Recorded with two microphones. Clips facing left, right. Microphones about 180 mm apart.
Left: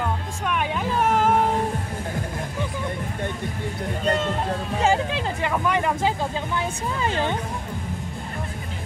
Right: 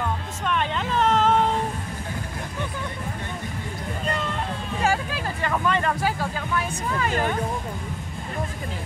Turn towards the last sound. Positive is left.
turn(degrees=25)  # may be behind; listen again after turning